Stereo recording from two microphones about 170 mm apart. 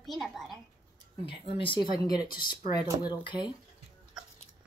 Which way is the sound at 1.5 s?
30° left (ahead or behind).